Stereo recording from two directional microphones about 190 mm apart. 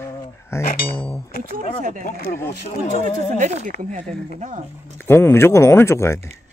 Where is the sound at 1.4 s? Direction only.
45° right (ahead or behind).